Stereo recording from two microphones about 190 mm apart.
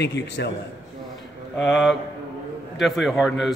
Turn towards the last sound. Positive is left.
turn(degrees=0)  # may be behind; listen again after turning